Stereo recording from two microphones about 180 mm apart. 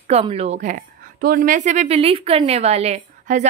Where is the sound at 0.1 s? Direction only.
35° right (ahead or behind).